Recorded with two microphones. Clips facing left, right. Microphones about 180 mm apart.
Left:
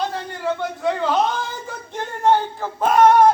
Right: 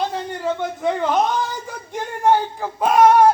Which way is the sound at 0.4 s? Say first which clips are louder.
Even; 15° right (ahead or behind).